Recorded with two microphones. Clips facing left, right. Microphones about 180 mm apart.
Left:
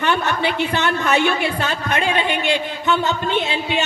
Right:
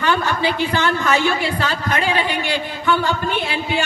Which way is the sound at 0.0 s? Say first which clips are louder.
Right 1 dB; 25° left (ahead or behind).